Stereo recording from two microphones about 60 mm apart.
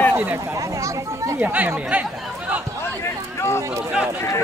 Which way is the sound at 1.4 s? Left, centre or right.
Right.